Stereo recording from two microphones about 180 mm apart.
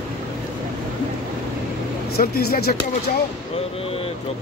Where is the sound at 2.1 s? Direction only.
60° left (ahead or behind).